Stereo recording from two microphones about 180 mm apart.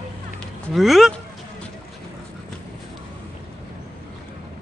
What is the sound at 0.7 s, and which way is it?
Speech, centre (ahead or behind).